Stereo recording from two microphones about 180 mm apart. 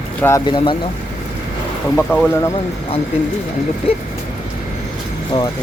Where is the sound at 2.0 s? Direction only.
10° left (ahead or behind).